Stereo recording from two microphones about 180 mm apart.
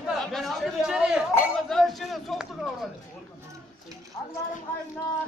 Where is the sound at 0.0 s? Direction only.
Centre (ahead or behind).